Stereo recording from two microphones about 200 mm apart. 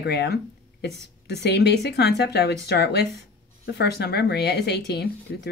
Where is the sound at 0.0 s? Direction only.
55° left (ahead or behind).